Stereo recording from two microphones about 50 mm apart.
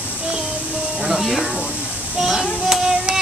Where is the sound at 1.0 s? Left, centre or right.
Centre.